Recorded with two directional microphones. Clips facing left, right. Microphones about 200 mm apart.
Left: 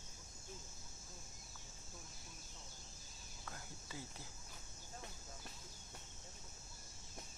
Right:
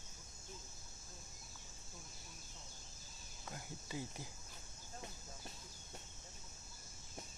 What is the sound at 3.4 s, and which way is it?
Cricket, 20° right (ahead or behind).